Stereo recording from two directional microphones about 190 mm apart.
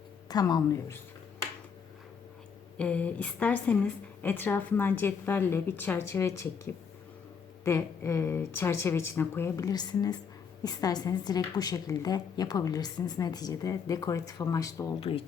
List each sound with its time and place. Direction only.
0.3 s a woman's voice: 20° left (ahead or behind)
2.7 s speech: 5° left (ahead or behind)
7.6 s a woman's voice: 15° left (ahead or behind)